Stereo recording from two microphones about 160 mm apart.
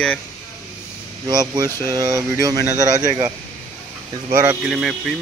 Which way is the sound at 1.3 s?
25° right (ahead or behind).